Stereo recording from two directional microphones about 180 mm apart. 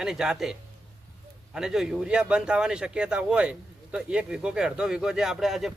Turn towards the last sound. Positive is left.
turn(degrees=0)  # may be behind; listen again after turning